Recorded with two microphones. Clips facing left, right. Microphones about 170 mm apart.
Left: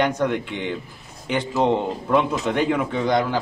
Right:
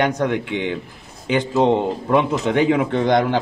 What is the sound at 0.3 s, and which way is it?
Speech, 65° right (ahead or behind).